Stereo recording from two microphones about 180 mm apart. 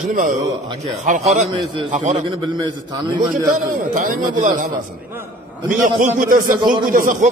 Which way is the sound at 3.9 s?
45° right (ahead or behind).